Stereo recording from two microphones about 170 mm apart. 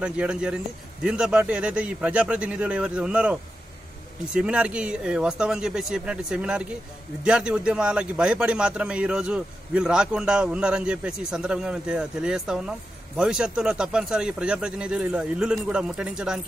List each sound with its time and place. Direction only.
0.0 s a man's voice: 5° right (ahead or behind)